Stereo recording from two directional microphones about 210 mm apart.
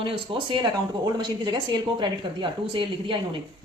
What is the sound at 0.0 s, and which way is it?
Speech, 25° right (ahead or behind).